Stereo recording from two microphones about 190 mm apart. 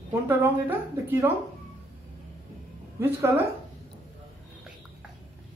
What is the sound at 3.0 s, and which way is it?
Speech, 10° right (ahead or behind).